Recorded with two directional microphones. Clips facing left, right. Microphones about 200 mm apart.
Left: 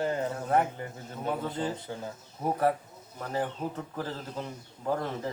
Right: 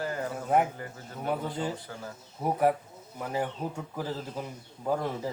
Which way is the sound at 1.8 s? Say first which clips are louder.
Left 3 dB; 20° left (ahead or behind).